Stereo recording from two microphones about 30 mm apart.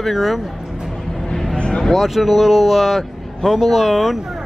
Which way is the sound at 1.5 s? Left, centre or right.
Left.